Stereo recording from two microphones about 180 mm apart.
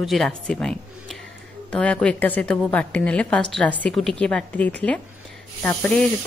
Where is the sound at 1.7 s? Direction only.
5° left (ahead or behind).